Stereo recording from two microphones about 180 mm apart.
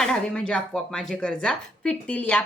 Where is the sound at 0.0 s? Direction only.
5° left (ahead or behind).